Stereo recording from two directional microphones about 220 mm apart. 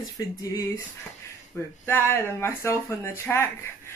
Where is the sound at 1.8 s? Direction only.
10° left (ahead or behind).